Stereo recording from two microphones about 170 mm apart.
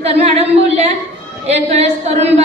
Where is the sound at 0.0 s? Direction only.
35° right (ahead or behind).